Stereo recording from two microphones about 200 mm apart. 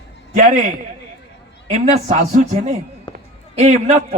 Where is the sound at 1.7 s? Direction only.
35° right (ahead or behind).